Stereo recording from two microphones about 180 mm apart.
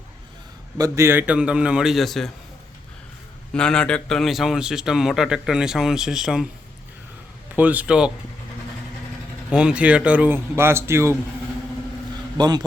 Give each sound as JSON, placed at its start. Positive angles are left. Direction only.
{"t": 0.8, "sound": "a man's voice", "side_deg": -15}
{"t": 3.5, "sound": "a man's voice", "side_deg": 5}
{"t": 7.5, "sound": "a man's voice", "side_deg": -10}
{"t": 9.5, "sound": "a man's voice", "side_deg": -5}
{"t": 12.4, "sound": "a man's voice", "side_deg": -25}